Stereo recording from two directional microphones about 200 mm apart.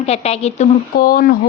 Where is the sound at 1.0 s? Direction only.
45° left (ahead or behind).